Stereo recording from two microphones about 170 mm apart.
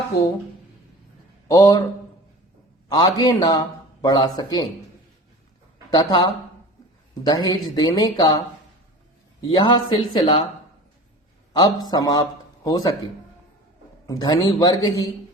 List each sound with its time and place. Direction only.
1.5 s speech: 20° left (ahead or behind)
2.9 s speech: 25° left (ahead or behind)
5.9 s speech: 25° left (ahead or behind)
9.5 s speech: 30° left (ahead or behind)
11.5 s speech: 25° left (ahead or behind)
14.1 s speech: 20° left (ahead or behind)